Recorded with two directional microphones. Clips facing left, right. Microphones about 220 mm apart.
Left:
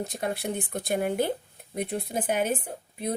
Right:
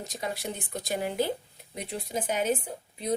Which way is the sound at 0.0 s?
55° left (ahead or behind).